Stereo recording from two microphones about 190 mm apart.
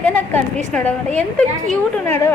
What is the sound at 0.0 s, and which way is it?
A woman's voice, 5° left (ahead or behind).